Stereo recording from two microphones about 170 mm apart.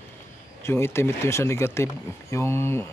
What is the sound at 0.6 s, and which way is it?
Speech, 15° left (ahead or behind).